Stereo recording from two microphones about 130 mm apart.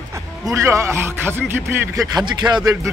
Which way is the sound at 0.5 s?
20° right (ahead or behind).